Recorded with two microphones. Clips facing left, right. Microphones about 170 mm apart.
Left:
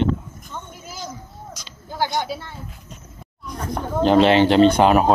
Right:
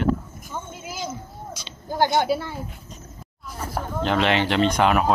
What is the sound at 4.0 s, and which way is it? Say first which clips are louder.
Speech: left 8 dB; 30° left (ahead or behind).